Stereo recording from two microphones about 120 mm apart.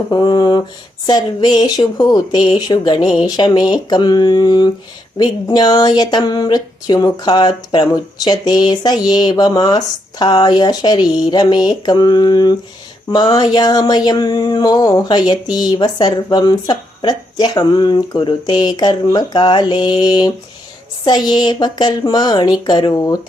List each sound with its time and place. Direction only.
0.1 s speech: 40° left (ahead or behind)